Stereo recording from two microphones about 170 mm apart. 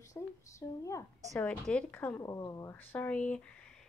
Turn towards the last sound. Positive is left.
turn(degrees=5)  # may be behind; listen again after turning